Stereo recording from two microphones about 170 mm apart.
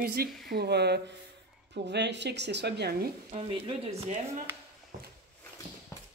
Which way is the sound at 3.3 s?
35° right (ahead or behind).